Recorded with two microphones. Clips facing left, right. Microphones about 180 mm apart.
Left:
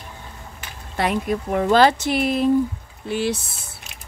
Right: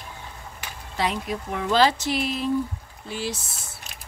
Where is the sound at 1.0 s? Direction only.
55° left (ahead or behind).